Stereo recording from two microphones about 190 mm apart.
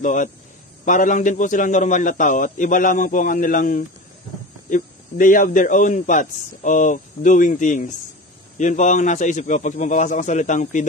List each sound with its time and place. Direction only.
0.0 s a man's voice: 40° left (ahead or behind)